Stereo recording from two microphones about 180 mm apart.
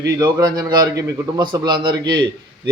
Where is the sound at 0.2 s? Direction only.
20° right (ahead or behind).